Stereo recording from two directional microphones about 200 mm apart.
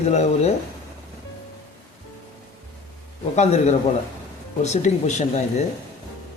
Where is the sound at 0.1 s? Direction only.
35° left (ahead or behind).